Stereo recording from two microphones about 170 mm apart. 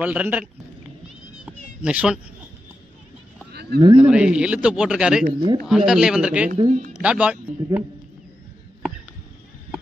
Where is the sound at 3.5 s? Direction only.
70° right (ahead or behind).